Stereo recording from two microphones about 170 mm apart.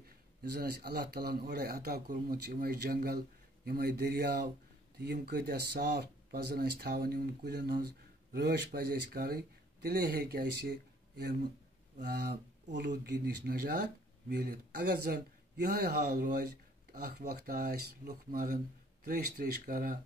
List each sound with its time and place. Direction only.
0.4 s speech: 60° right (ahead or behind)